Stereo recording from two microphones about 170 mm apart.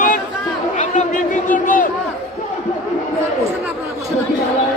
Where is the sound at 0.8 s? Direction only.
50° left (ahead or behind).